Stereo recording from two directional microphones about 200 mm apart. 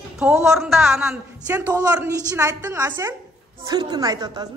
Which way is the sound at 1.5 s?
15° right (ahead or behind).